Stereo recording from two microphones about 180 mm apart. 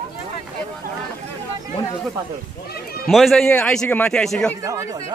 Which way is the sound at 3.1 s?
Centre (ahead or behind).